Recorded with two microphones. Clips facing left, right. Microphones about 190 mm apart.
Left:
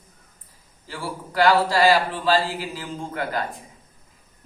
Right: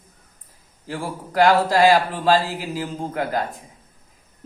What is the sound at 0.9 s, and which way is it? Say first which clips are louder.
A man's voice: right 4 dB; 45° right (ahead or behind).